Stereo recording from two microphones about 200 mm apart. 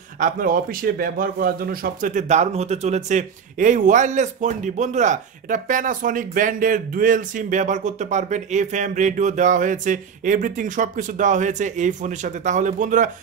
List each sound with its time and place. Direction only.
0.2 s a man's voice: 45° right (ahead or behind)